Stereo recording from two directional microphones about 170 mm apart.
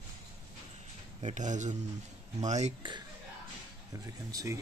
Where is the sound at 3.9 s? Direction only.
20° right (ahead or behind).